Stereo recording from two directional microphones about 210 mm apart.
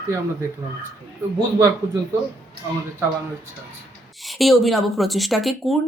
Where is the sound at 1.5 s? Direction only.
15° right (ahead or behind).